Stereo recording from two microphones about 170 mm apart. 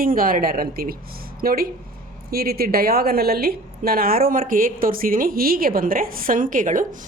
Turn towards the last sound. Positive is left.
turn(degrees=-50)  # may be behind; listen again after turning